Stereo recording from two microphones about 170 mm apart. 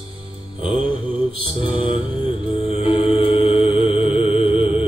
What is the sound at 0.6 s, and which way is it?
Music, 35° left (ahead or behind).